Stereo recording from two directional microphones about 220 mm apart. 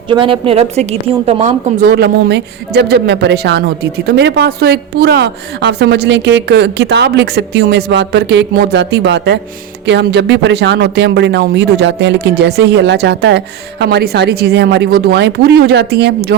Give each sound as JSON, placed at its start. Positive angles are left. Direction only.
{"t": 0.1, "sound": "a woman's voice", "side_deg": -25}
{"t": 1.9, "sound": "speech", "side_deg": -50}